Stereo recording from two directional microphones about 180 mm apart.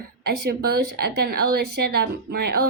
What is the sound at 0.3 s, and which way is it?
Speech, 65° right (ahead or behind).